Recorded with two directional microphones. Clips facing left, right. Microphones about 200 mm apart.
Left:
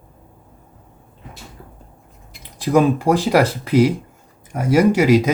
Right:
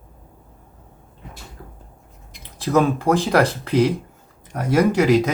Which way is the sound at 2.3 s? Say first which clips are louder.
Left 3 dB; 10° left (ahead or behind).